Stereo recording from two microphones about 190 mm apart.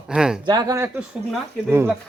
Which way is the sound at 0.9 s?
Centre (ahead or behind).